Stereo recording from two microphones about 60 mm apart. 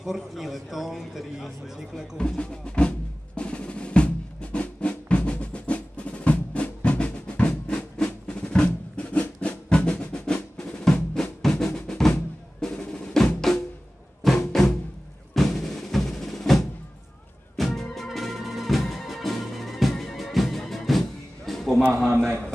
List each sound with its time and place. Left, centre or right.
0.0 s a man's voice: centre
2.1 s drum: centre
14.2 s music: centre
15.3 s percussion: centre
17.6 s music: centre
22.1 s a sound: right